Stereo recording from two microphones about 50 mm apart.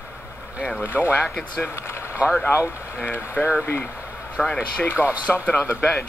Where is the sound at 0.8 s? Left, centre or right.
Left.